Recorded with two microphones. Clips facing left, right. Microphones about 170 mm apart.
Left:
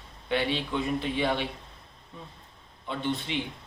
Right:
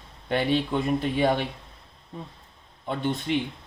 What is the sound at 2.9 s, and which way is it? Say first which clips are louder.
Speech: right 3 dB; 45° right (ahead or behind).